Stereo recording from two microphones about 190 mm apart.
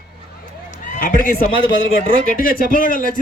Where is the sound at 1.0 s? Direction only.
50° left (ahead or behind).